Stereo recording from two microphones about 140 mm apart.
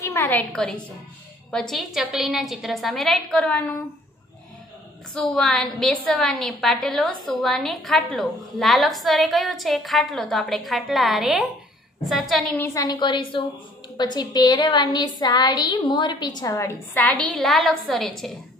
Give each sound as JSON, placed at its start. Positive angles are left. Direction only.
{"t": 0.0, "sound": "a sound", "side_deg": 20}
{"t": 0.4, "sound": "a woman's voice", "side_deg": 5}
{"t": 5.1, "sound": "a woman's voice", "side_deg": 5}
{"t": 12.5, "sound": "a woman's voice", "side_deg": 20}